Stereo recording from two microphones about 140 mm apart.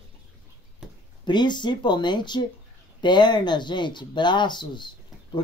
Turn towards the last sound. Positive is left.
turn(degrees=35)  # may be behind; listen again after turning